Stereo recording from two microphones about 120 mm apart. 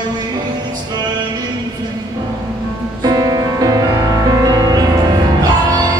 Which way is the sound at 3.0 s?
35° right (ahead or behind).